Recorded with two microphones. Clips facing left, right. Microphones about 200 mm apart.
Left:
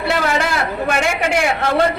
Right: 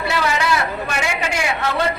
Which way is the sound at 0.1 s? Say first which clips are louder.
Left 1 dB; 50° left (ahead or behind).